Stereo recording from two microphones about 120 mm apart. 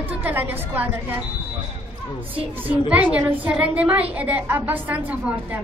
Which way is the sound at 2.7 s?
10° right (ahead or behind).